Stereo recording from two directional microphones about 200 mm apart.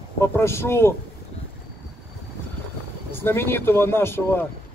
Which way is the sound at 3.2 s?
10° left (ahead or behind).